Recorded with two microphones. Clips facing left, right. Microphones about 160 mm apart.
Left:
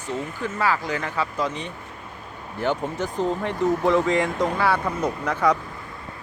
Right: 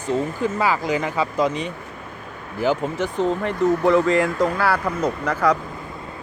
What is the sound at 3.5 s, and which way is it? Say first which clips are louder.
Speech: right 3 dB; 45° right (ahead or behind).